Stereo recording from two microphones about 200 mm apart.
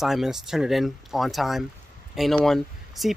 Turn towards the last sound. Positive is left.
turn(degrees=0)  # may be behind; listen again after turning